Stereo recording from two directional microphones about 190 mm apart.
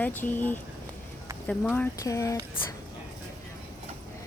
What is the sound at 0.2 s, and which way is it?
Speech, 10° left (ahead or behind).